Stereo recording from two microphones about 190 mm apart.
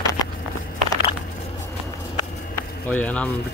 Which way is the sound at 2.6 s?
10° left (ahead or behind).